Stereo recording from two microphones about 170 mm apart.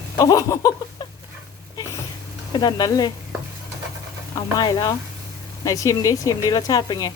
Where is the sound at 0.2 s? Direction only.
20° left (ahead or behind).